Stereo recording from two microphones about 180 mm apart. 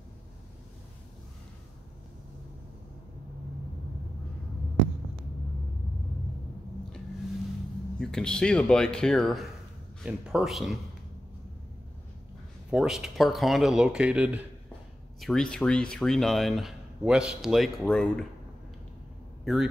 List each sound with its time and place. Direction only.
8.0 s speech: 5° left (ahead or behind)
12.7 s speech: 5° right (ahead or behind)
19.4 s a man's voice: 5° right (ahead or behind)